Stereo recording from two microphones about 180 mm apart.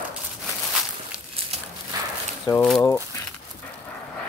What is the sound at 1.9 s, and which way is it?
Walk, 20° right (ahead or behind).